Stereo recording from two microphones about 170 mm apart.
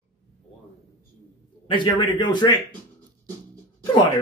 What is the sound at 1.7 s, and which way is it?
Speech, 30° left (ahead or behind).